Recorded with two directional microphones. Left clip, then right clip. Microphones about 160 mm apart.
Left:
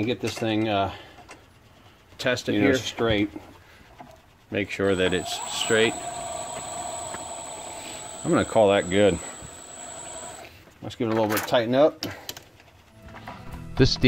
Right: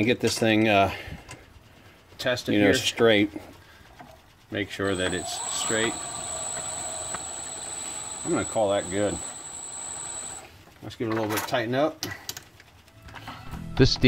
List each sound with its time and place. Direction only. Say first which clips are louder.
0.0 s speech: right 4 dB; 30° right (ahead or behind)
2.1 s speech: left 2 dB; 35° left (ahead or behind)
2.7 s speech: right 3 dB; 15° right (ahead or behind)
4.5 s speech: left 4 dB; 30° left (ahead or behind)
8.3 s speech: left 5 dB; 60° left (ahead or behind)
10.9 s speech: left 4 dB; 45° left (ahead or behind)
13.7 s speech: even; centre (ahead or behind)